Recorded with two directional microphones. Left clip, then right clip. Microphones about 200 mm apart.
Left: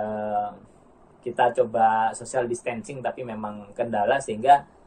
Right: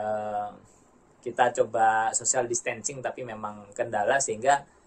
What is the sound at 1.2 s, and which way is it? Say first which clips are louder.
Speech: left 2 dB; 20° right (ahead or behind).